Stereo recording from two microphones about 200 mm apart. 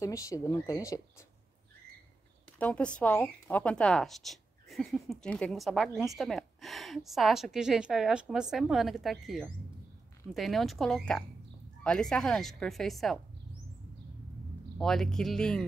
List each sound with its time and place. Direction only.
0.0 s speech: 15° left (ahead or behind)
2.6 s speech: 5° left (ahead or behind)
14.8 s speech: centre (ahead or behind)